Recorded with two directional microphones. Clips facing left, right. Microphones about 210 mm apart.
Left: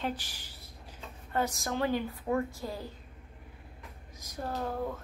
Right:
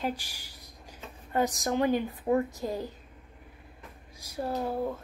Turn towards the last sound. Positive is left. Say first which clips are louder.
# right 4 dB
turn(degrees=-10)  # may be behind; listen again after turning